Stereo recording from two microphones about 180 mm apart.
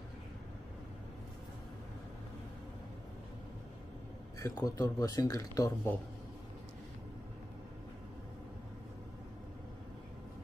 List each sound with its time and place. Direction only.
4.4 s speech: 20° left (ahead or behind)